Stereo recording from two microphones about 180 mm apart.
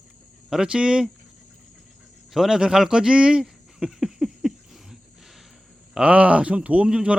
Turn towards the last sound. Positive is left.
turn(degrees=-5)  # may be behind; listen again after turning